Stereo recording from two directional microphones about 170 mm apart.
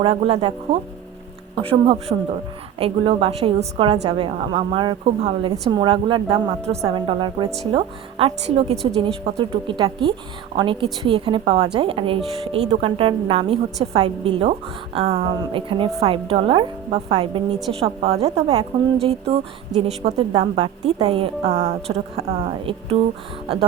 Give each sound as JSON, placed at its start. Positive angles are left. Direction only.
{"t": 0.0, "sound": "a woman's voice", "side_deg": -35}